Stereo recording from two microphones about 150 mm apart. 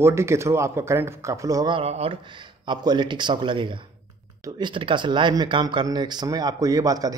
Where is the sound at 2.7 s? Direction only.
30° right (ahead or behind).